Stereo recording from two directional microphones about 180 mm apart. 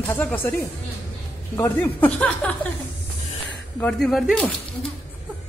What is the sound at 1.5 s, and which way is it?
Speech, 10° left (ahead or behind).